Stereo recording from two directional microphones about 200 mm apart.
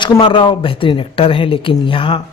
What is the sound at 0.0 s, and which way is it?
Speech, 25° left (ahead or behind).